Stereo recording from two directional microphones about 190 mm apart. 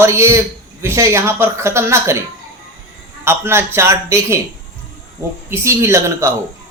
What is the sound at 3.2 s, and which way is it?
Speech, 15° right (ahead or behind).